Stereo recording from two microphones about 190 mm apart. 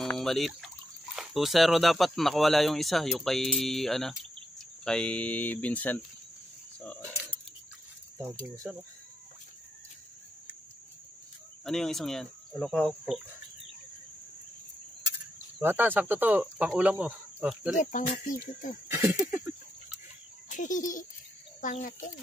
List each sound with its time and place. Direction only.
0.0 s speech: centre (ahead or behind)
8.2 s speech: 15° right (ahead or behind)
11.6 s speech: centre (ahead or behind)
15.6 s speech: 10° right (ahead or behind)
17.7 s speech: 45° left (ahead or behind)
18.9 s a sound: 10° right (ahead or behind)
20.4 s speech: 40° left (ahead or behind)